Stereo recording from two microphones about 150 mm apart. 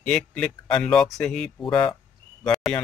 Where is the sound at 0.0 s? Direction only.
5° left (ahead or behind).